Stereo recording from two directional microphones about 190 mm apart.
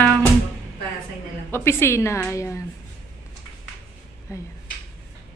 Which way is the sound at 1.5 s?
15° left (ahead or behind).